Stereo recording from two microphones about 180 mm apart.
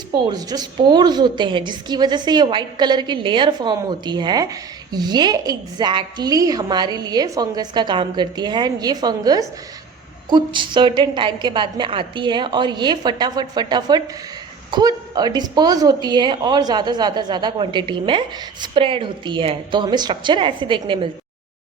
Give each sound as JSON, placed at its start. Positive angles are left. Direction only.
{"t": 0.1, "sound": "a woman's voice", "side_deg": -25}